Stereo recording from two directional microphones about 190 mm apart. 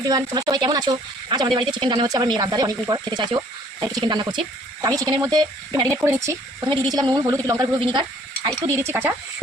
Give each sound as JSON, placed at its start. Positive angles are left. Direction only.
{"t": 0.0, "sound": "speech", "side_deg": -20}